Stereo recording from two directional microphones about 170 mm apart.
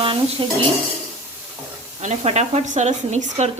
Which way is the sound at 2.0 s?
40° right (ahead or behind).